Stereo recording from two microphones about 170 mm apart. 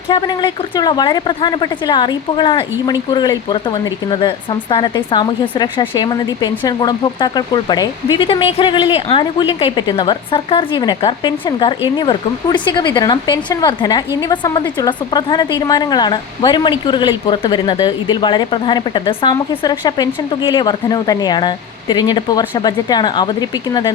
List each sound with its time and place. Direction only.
0.1 s speech: 25° left (ahead or behind)